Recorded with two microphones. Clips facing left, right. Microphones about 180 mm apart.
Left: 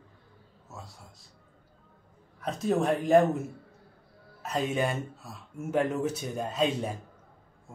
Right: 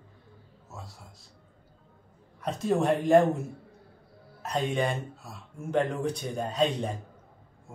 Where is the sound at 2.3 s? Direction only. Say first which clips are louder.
Right 1 dB; centre (ahead or behind).